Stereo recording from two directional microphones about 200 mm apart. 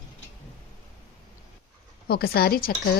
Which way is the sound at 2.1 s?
50° left (ahead or behind).